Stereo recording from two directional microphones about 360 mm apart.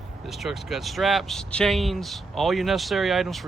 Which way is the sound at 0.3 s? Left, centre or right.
Centre.